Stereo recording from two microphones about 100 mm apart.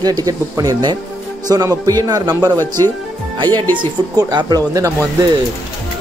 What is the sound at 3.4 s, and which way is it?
Speech, 20° left (ahead or behind).